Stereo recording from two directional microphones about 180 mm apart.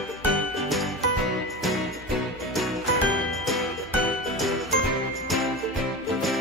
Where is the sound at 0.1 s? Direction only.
Centre (ahead or behind).